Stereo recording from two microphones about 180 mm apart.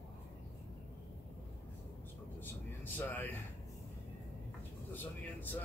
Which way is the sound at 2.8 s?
10° left (ahead or behind).